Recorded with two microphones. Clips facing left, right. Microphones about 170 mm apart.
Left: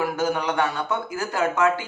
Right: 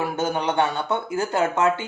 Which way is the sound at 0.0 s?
25° right (ahead or behind).